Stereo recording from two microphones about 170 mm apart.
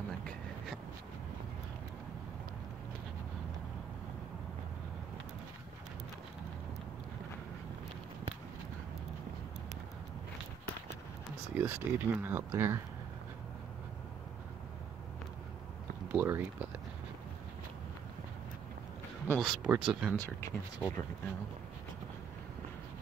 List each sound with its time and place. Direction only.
11.5 s speech: 15° right (ahead or behind)
16.1 s speech: 10° right (ahead or behind)
19.3 s speech: centre (ahead or behind)
20.4 s speech: 15° left (ahead or behind)